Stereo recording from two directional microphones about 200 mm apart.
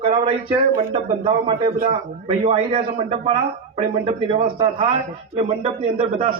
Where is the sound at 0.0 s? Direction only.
25° right (ahead or behind).